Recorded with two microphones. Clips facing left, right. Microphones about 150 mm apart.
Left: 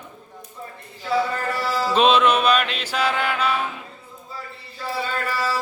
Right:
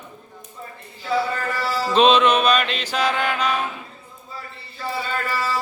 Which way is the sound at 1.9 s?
10° left (ahead or behind).